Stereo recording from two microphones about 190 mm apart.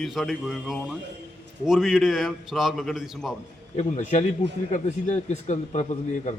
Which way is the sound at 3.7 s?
40° left (ahead or behind).